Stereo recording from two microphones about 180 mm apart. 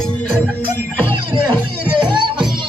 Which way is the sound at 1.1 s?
30° right (ahead or behind).